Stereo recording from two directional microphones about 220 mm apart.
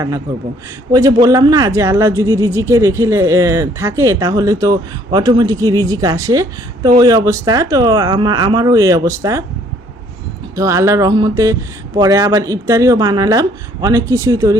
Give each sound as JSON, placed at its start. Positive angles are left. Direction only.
{"t": 0.3, "sound": "speech", "side_deg": -15}
{"t": 10.5, "sound": "speech", "side_deg": -15}